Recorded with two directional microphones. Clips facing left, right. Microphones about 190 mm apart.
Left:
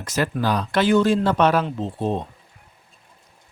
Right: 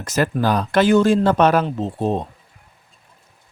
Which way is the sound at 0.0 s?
45° right (ahead or behind).